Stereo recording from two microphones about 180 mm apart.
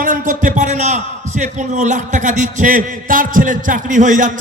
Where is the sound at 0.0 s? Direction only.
45° right (ahead or behind).